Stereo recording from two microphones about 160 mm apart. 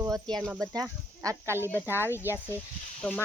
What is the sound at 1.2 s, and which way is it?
Speech, 15° right (ahead or behind).